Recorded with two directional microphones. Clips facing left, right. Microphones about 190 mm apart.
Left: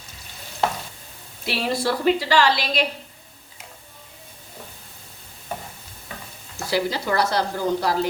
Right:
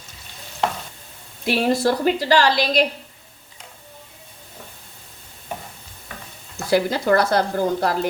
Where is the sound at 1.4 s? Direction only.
45° right (ahead or behind).